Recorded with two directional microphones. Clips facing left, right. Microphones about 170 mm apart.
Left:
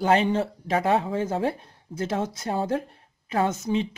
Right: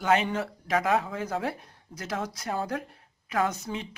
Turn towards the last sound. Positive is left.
turn(degrees=25)  # may be behind; listen again after turning